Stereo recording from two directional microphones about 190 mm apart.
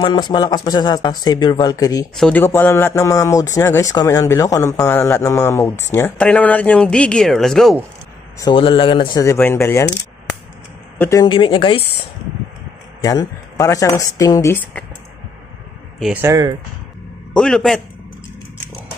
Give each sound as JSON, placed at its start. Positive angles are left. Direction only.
{"t": 0.0, "sound": "speech", "side_deg": 25}
{"t": 2.1, "sound": "speech", "side_deg": 5}
{"t": 8.4, "sound": "speech", "side_deg": 25}
{"t": 11.0, "sound": "speech", "side_deg": 15}
{"t": 13.0, "sound": "speech", "side_deg": 20}
{"t": 16.0, "sound": "speech", "side_deg": -10}
{"t": 17.3, "sound": "a man's voice", "side_deg": 5}